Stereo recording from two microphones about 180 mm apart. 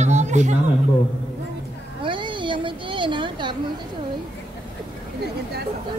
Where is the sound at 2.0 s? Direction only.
25° right (ahead or behind).